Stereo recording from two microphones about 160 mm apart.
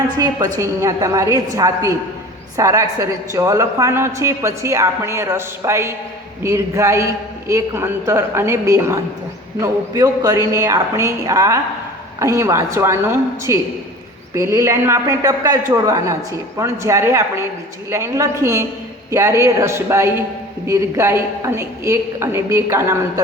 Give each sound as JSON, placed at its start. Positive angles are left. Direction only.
{"t": 0.2, "sound": "a man's voice", "side_deg": -20}